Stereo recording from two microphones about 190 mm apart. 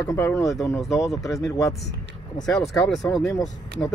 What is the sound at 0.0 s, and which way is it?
Speech, 10° left (ahead or behind).